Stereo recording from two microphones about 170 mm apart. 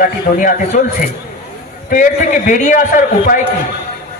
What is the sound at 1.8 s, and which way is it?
A man's voice, 50° left (ahead or behind).